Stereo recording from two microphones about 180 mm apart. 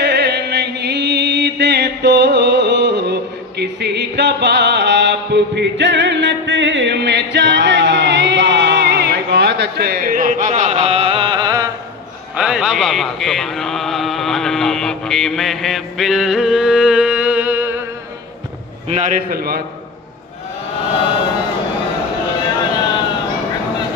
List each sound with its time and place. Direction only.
0.0 s chant: 65° right (ahead or behind); by 11.7 s 20° right (ahead or behind)
12.4 s a sound: 5° right (ahead or behind)
18.9 s a man's voice: 40° right (ahead or behind)